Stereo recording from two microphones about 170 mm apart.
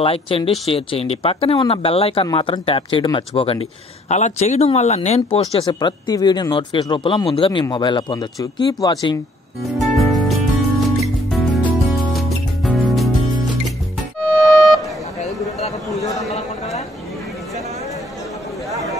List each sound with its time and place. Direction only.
0.0 s speech: 30° left (ahead or behind)
9.8 s music: centre (ahead or behind)
14.5 s vehicle: centre (ahead or behind)
16.0 s a sound: 20° left (ahead or behind)